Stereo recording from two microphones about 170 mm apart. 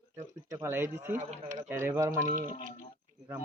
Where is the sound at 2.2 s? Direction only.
50° right (ahead or behind).